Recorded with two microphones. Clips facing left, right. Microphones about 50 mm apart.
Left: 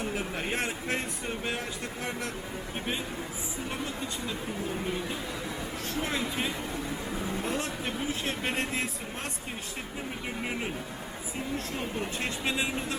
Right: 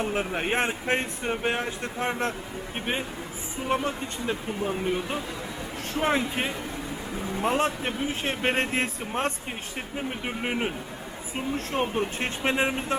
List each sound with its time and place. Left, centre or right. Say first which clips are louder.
0.0 s speech: right 5 dB; right
11.5 s speech: right 8 dB; right
12.2 s speech: right 5 dB; right